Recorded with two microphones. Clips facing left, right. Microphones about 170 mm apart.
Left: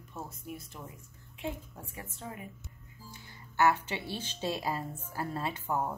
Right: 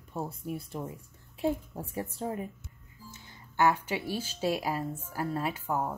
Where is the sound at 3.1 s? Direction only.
15° right (ahead or behind).